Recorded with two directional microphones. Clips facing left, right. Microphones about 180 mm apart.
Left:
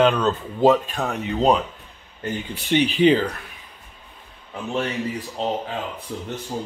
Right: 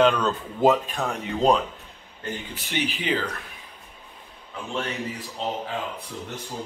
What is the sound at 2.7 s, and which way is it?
Speech, 25° left (ahead or behind).